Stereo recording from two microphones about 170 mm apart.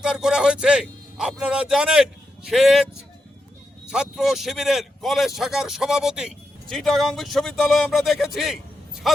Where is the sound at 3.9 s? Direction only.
5° right (ahead or behind).